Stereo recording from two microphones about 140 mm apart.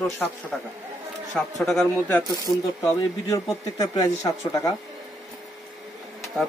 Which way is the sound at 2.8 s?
25° left (ahead or behind).